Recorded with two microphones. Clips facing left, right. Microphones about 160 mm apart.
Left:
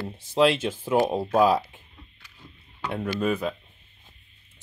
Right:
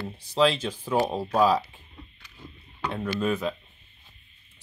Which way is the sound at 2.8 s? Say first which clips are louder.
Left 1 dB; 5° left (ahead or behind).